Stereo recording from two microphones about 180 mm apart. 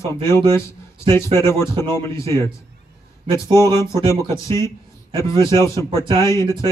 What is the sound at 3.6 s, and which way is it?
Speech, 15° left (ahead or behind).